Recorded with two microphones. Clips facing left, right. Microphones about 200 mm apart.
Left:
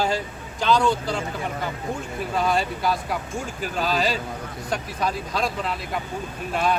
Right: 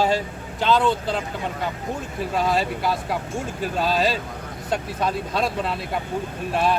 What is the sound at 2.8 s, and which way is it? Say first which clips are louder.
Speech: right 1 dB; 25° right (ahead or behind).